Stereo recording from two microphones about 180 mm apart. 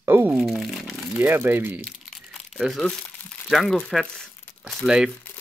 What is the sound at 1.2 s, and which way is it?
Speech, 10° right (ahead or behind).